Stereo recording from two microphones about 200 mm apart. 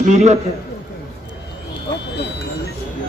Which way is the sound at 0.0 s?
35° right (ahead or behind).